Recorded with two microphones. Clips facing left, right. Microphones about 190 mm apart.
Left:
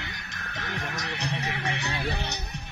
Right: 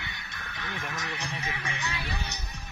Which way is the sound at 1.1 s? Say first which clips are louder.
Left 4 dB; 70° left (ahead or behind).